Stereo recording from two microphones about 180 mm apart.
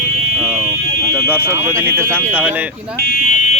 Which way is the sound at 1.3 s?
15° right (ahead or behind).